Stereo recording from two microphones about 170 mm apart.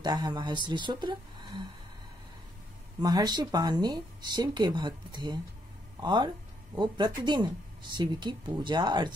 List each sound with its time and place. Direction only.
0.0 s speech: 25° right (ahead or behind)
3.0 s speech: 25° right (ahead or behind)